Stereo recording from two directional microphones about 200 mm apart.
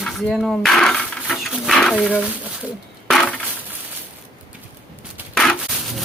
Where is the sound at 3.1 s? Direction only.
Centre (ahead or behind).